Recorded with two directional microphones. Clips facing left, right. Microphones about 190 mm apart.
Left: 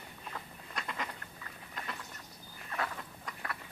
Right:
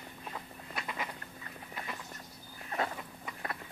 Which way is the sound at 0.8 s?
5° right (ahead or behind).